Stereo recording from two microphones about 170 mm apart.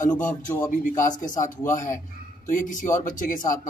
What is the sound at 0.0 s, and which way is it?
Speech, 50° left (ahead or behind).